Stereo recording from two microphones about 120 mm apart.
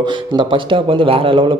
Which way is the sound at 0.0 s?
40° right (ahead or behind).